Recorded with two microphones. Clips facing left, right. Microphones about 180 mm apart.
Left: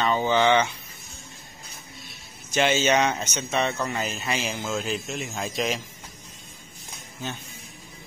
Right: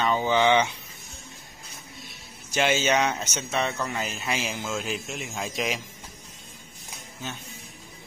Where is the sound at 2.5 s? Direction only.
10° right (ahead or behind).